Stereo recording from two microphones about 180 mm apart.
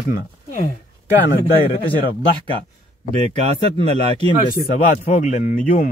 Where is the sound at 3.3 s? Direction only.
35° right (ahead or behind).